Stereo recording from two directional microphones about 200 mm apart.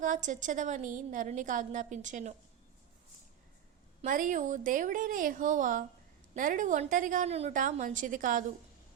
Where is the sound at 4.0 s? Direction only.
40° right (ahead or behind).